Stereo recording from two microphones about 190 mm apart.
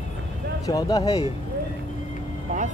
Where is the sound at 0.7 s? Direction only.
20° left (ahead or behind).